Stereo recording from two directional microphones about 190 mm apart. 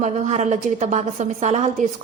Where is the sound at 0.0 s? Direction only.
35° right (ahead or behind).